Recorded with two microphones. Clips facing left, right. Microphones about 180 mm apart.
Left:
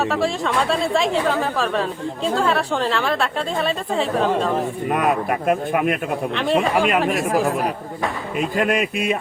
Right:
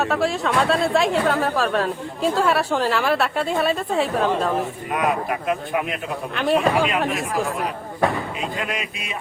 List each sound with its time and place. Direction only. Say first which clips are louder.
0.0 s speech: even; centre (ahead or behind)
4.9 s speech: left 3 dB; 50° left (ahead or behind)
6.3 s speech: right 1 dB; centre (ahead or behind)
8.4 s speech: left 7 dB; 50° left (ahead or behind)